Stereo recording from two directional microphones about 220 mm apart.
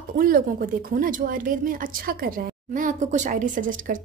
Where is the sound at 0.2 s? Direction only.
40° right (ahead or behind).